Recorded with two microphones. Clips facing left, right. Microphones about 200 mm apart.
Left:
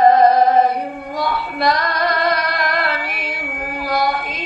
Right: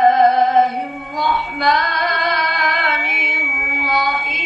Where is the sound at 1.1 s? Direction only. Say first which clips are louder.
Right 1 dB; 30° left (ahead or behind).